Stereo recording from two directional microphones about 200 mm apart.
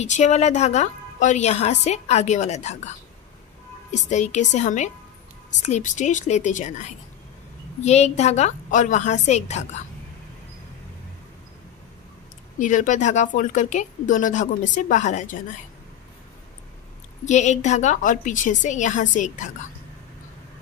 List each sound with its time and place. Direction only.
0.0 s speech: 35° left (ahead or behind)
3.9 s speech: 35° left (ahead or behind)
12.5 s speech: 40° left (ahead or behind)
17.3 s speech: 35° left (ahead or behind)